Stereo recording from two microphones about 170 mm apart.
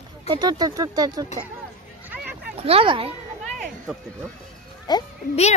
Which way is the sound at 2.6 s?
35° right (ahead or behind).